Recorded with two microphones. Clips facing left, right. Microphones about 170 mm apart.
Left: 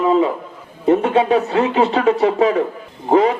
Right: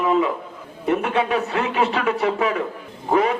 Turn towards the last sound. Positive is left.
turn(degrees=30)  # may be behind; listen again after turning